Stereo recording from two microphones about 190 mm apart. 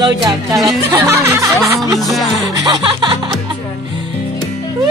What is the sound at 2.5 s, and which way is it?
Speech, 20° right (ahead or behind).